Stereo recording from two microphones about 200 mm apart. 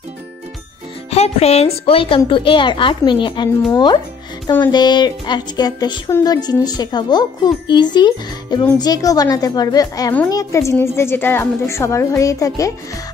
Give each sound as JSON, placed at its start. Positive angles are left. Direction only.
{"t": 1.1, "sound": "a woman's voice", "side_deg": 30}